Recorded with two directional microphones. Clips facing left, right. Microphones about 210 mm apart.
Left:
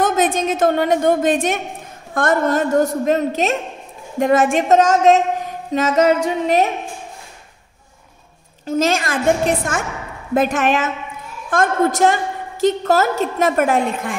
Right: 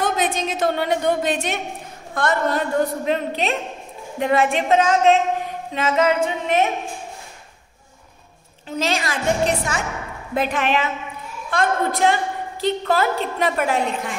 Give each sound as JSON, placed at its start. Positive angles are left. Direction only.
{"t": 0.0, "sound": "a woman's voice", "side_deg": 50}
{"t": 5.7, "sound": "a sound", "side_deg": 40}
{"t": 8.6, "sound": "a woman's voice", "side_deg": 45}